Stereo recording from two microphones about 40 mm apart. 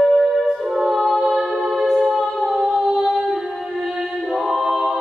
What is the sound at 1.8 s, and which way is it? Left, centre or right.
Music, centre.